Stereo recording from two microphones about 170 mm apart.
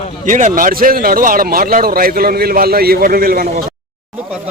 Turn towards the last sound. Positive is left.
turn(degrees=-60)  # may be behind; listen again after turning